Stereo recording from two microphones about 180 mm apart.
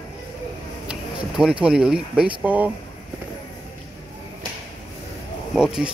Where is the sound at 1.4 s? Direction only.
5° right (ahead or behind).